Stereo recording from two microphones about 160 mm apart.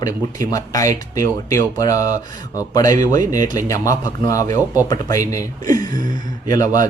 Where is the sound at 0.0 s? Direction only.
20° left (ahead or behind).